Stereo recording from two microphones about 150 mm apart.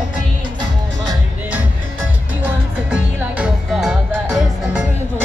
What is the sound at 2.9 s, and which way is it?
Music, 5° right (ahead or behind).